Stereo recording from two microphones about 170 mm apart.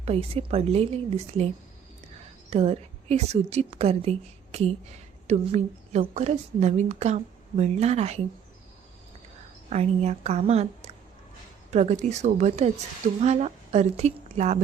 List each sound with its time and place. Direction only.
0.0 s a woman's voice: 35° right (ahead or behind)
2.5 s a woman's voice: 35° right (ahead or behind)
9.6 s a woman's voice: 40° right (ahead or behind)
11.7 s a woman's voice: 45° right (ahead or behind)